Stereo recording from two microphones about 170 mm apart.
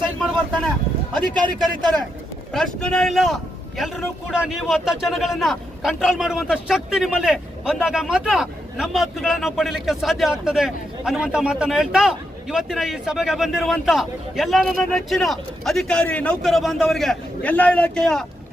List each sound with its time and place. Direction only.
1.5 s a man's voice: 25° right (ahead or behind)
2.5 s speech: 5° left (ahead or behind)